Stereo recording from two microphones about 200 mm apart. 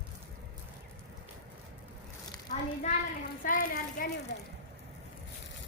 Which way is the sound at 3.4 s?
45° left (ahead or behind).